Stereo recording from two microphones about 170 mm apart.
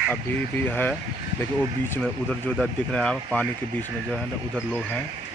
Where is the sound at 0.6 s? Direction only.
10° left (ahead or behind).